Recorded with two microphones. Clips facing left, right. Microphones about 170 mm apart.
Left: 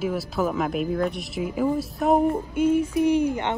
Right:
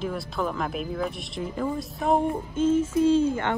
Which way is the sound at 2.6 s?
15° left (ahead or behind).